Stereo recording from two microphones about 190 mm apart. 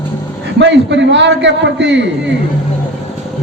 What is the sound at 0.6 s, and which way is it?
A man's voice, 70° right (ahead or behind).